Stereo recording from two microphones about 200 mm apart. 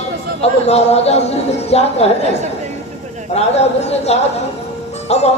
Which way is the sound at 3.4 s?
30° left (ahead or behind).